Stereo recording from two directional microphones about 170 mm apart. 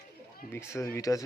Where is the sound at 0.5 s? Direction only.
15° left (ahead or behind).